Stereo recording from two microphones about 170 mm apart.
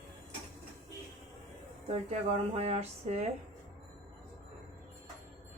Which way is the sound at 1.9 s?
40° right (ahead or behind).